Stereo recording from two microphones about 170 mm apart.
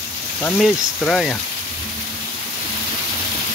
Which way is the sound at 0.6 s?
Centre (ahead or behind).